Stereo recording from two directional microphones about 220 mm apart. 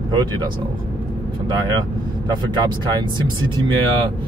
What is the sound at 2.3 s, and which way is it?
Speech, 20° right (ahead or behind).